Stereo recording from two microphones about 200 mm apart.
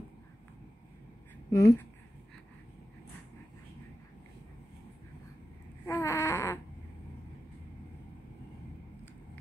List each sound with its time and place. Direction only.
1.5 s speech: 15° left (ahead or behind)
5.9 s baby cry: 15° left (ahead or behind)